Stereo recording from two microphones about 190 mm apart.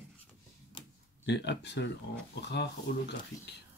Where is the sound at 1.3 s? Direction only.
65° left (ahead or behind).